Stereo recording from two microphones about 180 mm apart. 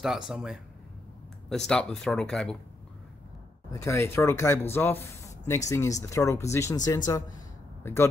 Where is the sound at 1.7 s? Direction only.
5° left (ahead or behind).